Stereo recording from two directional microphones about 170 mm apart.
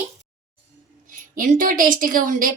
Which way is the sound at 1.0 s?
50° right (ahead or behind).